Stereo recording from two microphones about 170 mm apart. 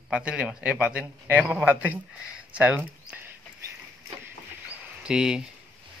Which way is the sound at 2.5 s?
5° right (ahead or behind).